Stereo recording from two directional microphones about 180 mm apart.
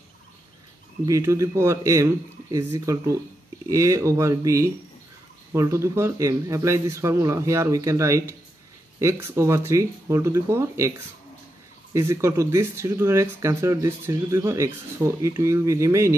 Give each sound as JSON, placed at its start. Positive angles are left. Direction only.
{"t": 1.0, "sound": "speech", "side_deg": -15}
{"t": 11.9, "sound": "speech", "side_deg": -15}